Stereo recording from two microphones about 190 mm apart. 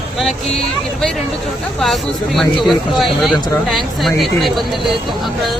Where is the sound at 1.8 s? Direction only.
Centre (ahead or behind).